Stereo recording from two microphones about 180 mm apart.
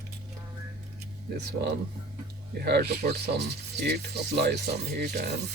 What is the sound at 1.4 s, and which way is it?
Speech, 70° right (ahead or behind).